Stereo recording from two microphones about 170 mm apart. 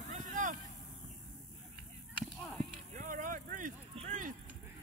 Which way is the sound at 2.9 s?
50° right (ahead or behind).